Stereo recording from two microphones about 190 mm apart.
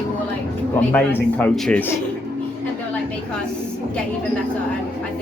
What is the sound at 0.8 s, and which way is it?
A man's voice, 10° left (ahead or behind).